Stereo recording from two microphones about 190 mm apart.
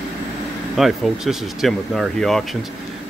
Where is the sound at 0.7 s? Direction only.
Centre (ahead or behind).